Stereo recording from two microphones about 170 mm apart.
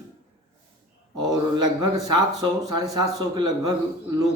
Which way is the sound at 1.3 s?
25° right (ahead or behind).